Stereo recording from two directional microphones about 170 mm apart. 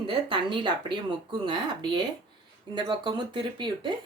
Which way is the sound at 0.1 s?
30° right (ahead or behind).